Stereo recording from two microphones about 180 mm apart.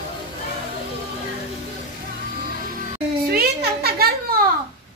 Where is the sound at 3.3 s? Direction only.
60° right (ahead or behind).